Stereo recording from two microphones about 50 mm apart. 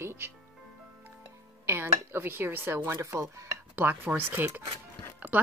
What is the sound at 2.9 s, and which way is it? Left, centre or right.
Speech, right.